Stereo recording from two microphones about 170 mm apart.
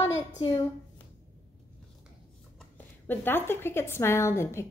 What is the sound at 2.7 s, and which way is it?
A woman's voice, 10° left (ahead or behind).